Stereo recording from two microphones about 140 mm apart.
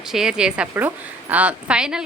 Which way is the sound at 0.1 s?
5° right (ahead or behind).